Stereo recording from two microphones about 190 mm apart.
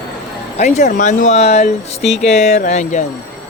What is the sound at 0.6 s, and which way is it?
Speech, 35° left (ahead or behind).